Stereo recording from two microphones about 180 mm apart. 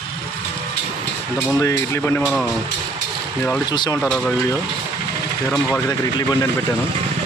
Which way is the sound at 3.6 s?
25° left (ahead or behind).